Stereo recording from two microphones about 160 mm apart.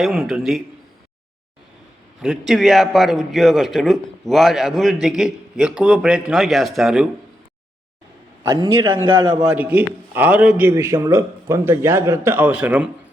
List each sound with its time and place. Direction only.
0.0 s a man's voice: centre (ahead or behind)
2.2 s a man's voice: centre (ahead or behind)
8.4 s a man's voice: 20° right (ahead or behind)
9.6 s a man's voice: 10° right (ahead or behind)